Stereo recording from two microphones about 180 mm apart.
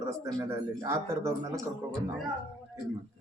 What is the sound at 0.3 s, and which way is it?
Speech, 15° right (ahead or behind).